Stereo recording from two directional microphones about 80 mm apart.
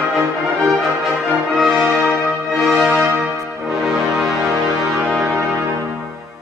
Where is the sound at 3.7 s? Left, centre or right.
Centre.